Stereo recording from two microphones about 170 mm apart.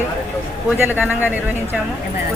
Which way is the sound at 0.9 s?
10° right (ahead or behind).